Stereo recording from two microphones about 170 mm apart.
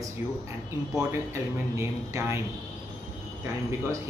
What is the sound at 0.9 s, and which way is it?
A man's voice, 15° right (ahead or behind).